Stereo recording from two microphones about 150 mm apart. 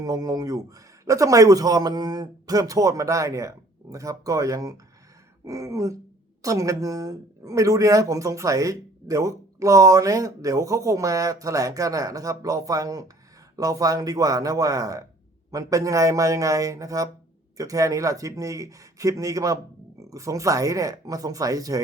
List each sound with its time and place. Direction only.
0.0 s speech: 25° right (ahead or behind)